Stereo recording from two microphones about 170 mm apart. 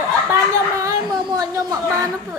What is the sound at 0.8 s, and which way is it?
Speech, 25° right (ahead or behind).